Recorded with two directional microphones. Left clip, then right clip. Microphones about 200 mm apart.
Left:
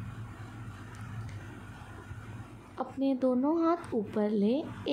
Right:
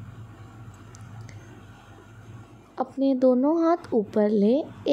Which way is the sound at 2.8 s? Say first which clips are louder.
Right 8 dB; 20° right (ahead or behind).